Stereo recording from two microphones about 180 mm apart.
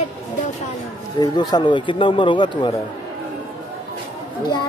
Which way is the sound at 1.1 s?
25° left (ahead or behind).